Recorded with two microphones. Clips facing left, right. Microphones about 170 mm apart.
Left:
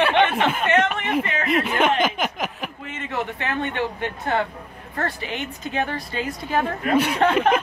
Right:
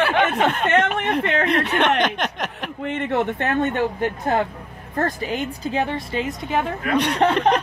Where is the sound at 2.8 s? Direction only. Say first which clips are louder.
Right 8 dB; 60° right (ahead or behind); by 6.6 s 25° right (ahead or behind).